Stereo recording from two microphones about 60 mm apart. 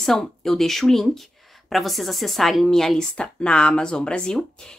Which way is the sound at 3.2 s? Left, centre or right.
Centre.